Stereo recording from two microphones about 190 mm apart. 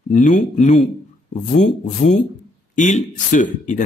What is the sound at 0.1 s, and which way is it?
Speech, 40° left (ahead or behind).